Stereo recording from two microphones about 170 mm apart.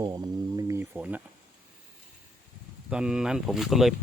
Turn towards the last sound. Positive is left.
turn(degrees=0)  # may be behind; listen again after turning